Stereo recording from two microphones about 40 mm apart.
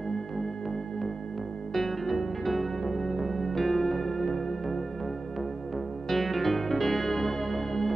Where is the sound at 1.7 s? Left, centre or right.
Centre.